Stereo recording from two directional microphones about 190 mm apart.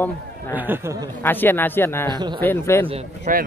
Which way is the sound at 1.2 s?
10° left (ahead or behind).